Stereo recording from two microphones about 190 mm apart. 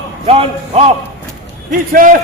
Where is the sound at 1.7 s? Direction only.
45° right (ahead or behind).